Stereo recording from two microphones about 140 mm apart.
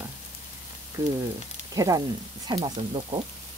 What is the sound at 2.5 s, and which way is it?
Sizzle, 30° right (ahead or behind).